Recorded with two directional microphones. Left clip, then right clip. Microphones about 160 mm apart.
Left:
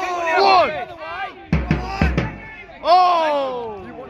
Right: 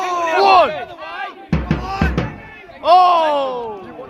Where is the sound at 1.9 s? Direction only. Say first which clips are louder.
Right 2 dB; 35° left (ahead or behind).